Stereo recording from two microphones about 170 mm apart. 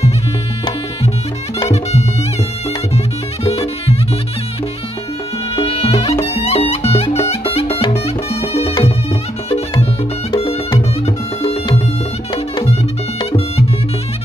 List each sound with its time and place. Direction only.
1.7 s music: 40° left (ahead or behind)
5.6 s music: 35° left (ahead or behind)
10.3 s music: 30° left (ahead or behind)